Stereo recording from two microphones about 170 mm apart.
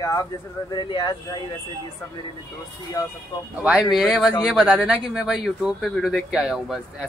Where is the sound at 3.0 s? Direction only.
20° left (ahead or behind).